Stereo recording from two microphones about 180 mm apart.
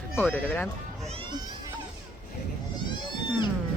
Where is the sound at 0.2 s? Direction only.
10° left (ahead or behind).